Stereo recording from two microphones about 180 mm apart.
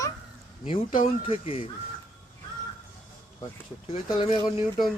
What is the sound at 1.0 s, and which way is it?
Speech, 30° left (ahead or behind).